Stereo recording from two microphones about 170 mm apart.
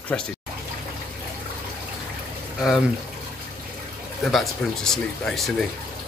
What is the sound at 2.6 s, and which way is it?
Speech, centre (ahead or behind).